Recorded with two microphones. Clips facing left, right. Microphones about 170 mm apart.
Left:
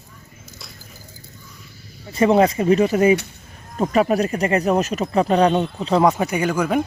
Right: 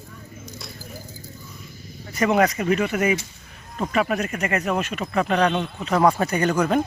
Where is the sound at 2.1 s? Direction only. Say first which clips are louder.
Left 4 dB; 30° left (ahead or behind).